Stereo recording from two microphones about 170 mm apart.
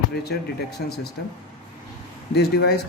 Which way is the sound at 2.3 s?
70° left (ahead or behind).